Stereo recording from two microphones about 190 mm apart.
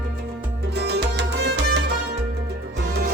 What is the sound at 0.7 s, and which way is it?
Music, 60° right (ahead or behind).